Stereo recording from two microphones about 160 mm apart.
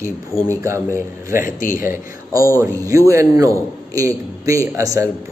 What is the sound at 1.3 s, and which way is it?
Speech, 55° left (ahead or behind).